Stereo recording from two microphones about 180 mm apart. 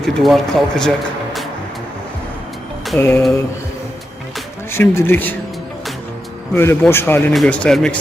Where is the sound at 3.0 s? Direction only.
15° left (ahead or behind).